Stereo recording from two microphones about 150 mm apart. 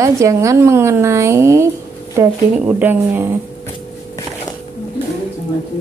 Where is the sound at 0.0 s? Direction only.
20° right (ahead or behind).